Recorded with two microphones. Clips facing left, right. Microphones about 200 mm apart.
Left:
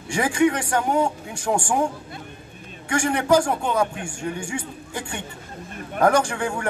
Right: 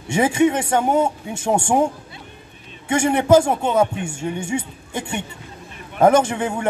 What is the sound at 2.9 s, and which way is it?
A man's voice, 25° right (ahead or behind).